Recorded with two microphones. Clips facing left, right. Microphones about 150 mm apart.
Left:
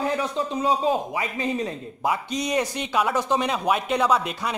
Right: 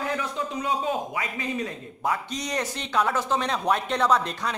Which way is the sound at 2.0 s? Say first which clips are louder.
Left 3 dB; 15° left (ahead or behind).